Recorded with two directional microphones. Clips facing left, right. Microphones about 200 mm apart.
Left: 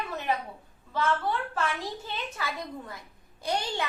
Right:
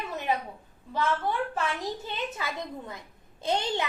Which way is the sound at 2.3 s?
20° right (ahead or behind).